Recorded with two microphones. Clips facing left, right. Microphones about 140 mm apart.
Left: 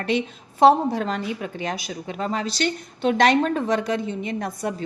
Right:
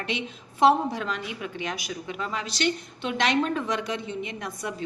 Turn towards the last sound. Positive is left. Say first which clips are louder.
# left 6 dB
turn(degrees=40)  # may be behind; listen again after turning